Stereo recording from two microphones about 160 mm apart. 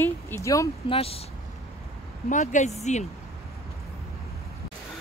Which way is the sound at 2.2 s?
50° left (ahead or behind).